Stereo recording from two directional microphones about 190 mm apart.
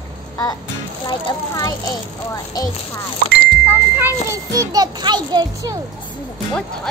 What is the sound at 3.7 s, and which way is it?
A child's voice, 10° right (ahead or behind).